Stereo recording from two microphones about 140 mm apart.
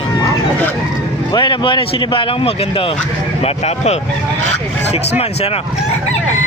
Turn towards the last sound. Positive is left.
turn(degrees=45)  # may be behind; listen again after turning